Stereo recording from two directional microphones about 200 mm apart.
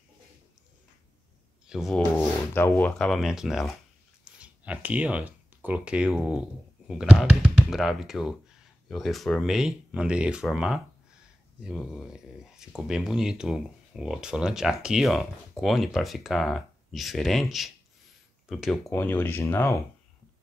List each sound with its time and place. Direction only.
1.7 s speech: centre (ahead or behind)
18.9 s speech: 10° left (ahead or behind)